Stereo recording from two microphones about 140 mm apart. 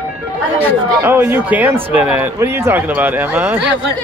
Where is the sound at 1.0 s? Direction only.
15° right (ahead or behind).